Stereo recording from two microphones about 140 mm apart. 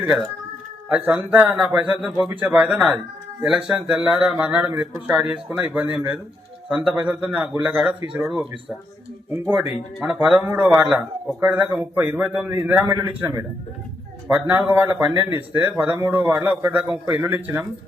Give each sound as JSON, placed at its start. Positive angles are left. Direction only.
{"t": 0.0, "sound": "speech", "side_deg": -5}
{"t": 10.0, "sound": "a man's voice", "side_deg": -10}